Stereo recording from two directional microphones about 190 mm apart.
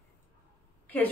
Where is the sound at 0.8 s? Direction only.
10° left (ahead or behind).